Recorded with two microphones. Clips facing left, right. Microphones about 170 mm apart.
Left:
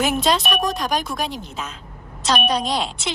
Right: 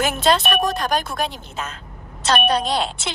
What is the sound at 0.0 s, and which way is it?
Speech, centre (ahead or behind).